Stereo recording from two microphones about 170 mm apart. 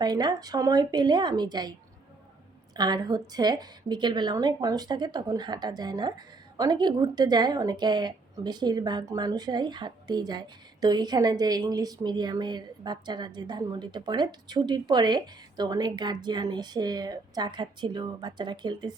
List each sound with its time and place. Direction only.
0.0 s a woman's voice: 25° right (ahead or behind)
2.7 s a woman's voice: 25° right (ahead or behind)